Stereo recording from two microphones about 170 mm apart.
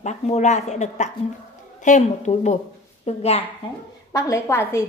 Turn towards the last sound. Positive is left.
turn(degrees=15)  # may be behind; listen again after turning